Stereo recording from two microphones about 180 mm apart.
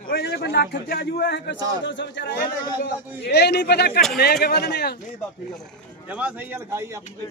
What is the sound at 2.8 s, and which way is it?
A man's voice, 65° left (ahead or behind).